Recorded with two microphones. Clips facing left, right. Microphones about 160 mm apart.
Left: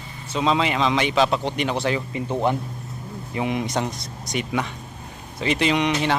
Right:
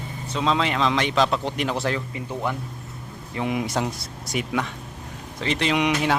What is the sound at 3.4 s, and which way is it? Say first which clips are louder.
A man's voice: left 1 dB; 5° right (ahead or behind).